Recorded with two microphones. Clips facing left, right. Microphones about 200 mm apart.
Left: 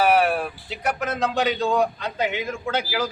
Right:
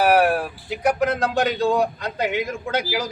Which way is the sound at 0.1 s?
10° right (ahead or behind).